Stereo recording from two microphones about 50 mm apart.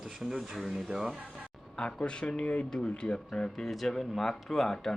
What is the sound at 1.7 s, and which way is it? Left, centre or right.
Speech, left.